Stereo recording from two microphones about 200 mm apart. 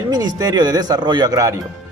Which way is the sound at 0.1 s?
20° right (ahead or behind).